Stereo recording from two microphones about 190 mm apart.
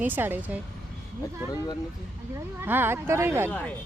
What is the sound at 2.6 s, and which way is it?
Speech, 10° right (ahead or behind).